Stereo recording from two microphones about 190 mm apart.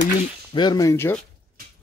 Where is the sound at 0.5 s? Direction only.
20° left (ahead or behind).